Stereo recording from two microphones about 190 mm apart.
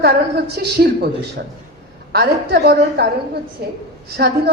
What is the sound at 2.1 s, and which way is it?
A man's voice, 55° right (ahead or behind).